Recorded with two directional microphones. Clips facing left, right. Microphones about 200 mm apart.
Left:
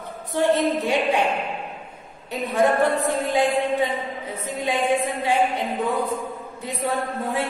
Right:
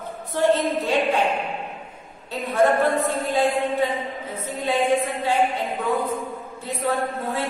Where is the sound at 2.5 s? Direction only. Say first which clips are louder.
Right 1 dB; 15° left (ahead or behind).